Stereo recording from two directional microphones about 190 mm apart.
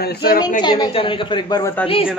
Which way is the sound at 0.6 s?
20° left (ahead or behind).